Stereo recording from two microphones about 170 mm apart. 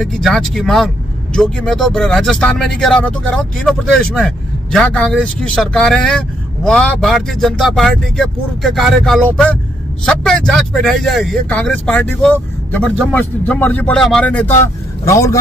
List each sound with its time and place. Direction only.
0.0 s speech: centre (ahead or behind); by 15.3 s 15° left (ahead or behind)